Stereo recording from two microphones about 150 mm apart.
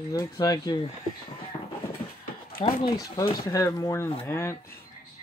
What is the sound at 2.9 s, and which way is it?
Speech, 25° left (ahead or behind).